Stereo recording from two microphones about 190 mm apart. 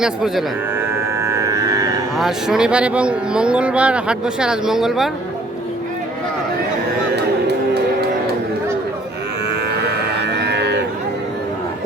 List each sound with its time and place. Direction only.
0.0 s speech: centre (ahead or behind)
0.8 s cattle: 15° right (ahead or behind)
2.1 s speech: centre (ahead or behind)
9.5 s cattle: 60° right (ahead or behind)